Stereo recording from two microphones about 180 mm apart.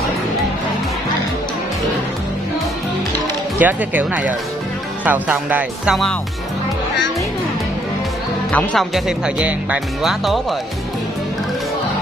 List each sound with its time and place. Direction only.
3.5 s speech: 10° right (ahead or behind)
8.5 s speech: 5° left (ahead or behind)